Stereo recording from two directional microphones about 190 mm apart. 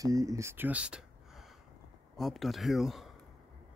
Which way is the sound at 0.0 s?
20° right (ahead or behind).